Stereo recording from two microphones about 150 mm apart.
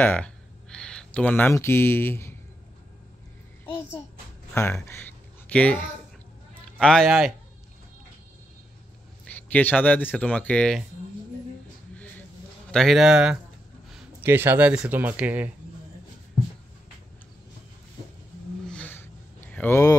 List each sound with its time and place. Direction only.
0.0 s speech: 10° left (ahead or behind)
4.6 s a man's voice: 15° left (ahead or behind); by 7.3 s centre (ahead or behind)
9.5 s speech: 10° left (ahead or behind)
12.7 s a man's voice: centre (ahead or behind)
18.7 s a sound: 10° left (ahead or behind)